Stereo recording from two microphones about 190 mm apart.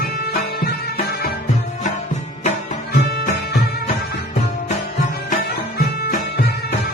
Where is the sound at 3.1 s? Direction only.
55° left (ahead or behind).